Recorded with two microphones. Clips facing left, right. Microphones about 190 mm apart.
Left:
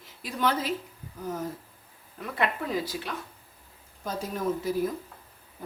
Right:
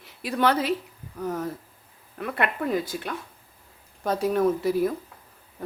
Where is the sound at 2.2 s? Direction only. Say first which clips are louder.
Right 3 dB; 60° right (ahead or behind).